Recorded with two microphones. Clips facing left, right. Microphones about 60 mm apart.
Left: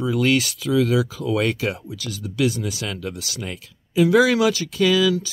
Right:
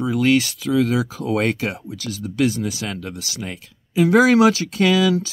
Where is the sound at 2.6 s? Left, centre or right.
Centre.